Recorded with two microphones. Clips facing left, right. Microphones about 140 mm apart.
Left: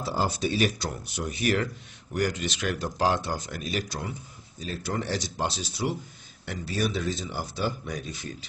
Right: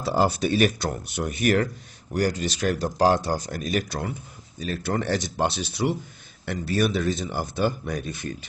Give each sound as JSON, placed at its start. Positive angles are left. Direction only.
{"t": 0.0, "sound": "speech", "side_deg": -65}
{"t": 2.1, "sound": "speech", "side_deg": -35}